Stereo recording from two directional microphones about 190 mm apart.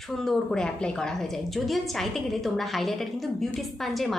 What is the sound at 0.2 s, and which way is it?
A woman's voice, 5° left (ahead or behind).